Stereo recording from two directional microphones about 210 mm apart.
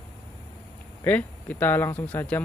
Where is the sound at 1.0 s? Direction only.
10° left (ahead or behind).